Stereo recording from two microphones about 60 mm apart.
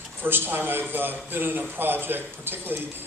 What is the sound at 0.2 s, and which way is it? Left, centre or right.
A man's voice, right.